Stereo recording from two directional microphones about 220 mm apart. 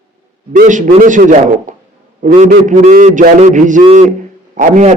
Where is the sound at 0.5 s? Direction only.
35° right (ahead or behind).